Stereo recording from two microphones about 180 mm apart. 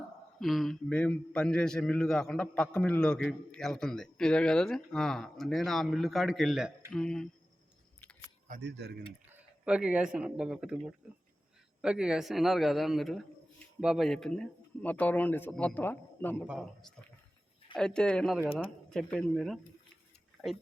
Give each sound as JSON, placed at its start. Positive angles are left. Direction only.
{"t": 0.3, "sound": "a man's voice", "side_deg": 0}
{"t": 8.6, "sound": "speech", "side_deg": -70}
{"t": 9.2, "sound": "a man's voice", "side_deg": -10}
{"t": 16.5, "sound": "a man's voice", "side_deg": 0}